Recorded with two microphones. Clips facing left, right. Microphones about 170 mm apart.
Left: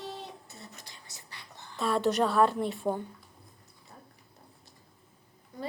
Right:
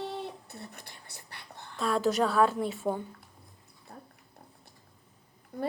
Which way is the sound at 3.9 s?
60° right (ahead or behind).